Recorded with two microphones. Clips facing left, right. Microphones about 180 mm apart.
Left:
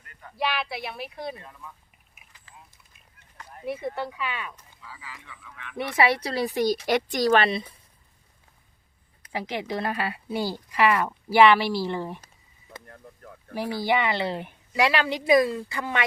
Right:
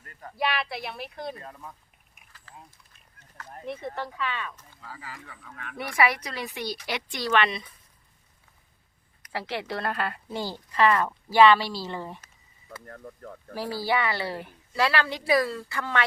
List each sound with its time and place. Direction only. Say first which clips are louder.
0.3 s speech: even; centre (ahead or behind)
1.4 s speech: right 2 dB; 40° right (ahead or behind)
2.3 s a sound: right 3 dB; 20° left (ahead or behind)
3.7 s speech: left 4 dB; 10° left (ahead or behind)
4.8 s speech: right 4 dB; 45° right (ahead or behind)
5.7 s speech: left 2 dB; 25° left (ahead or behind)
9.3 s speech: left 2 dB; 15° left (ahead or behind)
12.9 s speech: right 5 dB; 55° right (ahead or behind)
13.5 s speech: left 2 dB; 20° left (ahead or behind)